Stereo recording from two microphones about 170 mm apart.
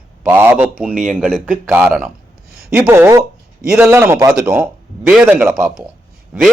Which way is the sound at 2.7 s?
15° right (ahead or behind).